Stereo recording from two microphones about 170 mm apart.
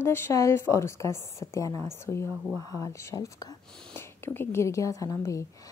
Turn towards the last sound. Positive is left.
turn(degrees=20)  # may be behind; listen again after turning